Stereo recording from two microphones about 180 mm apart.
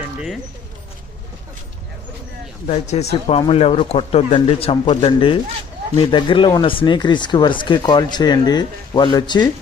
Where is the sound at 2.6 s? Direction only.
40° left (ahead or behind).